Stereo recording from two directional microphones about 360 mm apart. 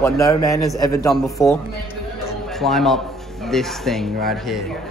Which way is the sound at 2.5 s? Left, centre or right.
Centre.